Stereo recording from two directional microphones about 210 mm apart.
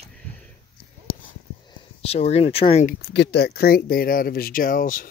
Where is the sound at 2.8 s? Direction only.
55° left (ahead or behind).